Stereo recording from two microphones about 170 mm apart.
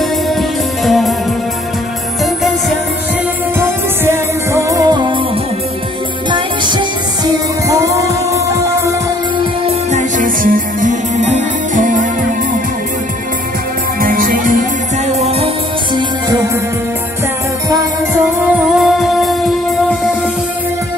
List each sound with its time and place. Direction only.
0.3 s music: centre (ahead or behind)
3.5 s music: 15° right (ahead or behind)
6.3 s music: 25° right (ahead or behind)
9.7 s music: 45° right (ahead or behind)
14.0 s music: 55° right (ahead or behind); by 16.0 s 35° right (ahead or behind)
18.8 s music: centre (ahead or behind)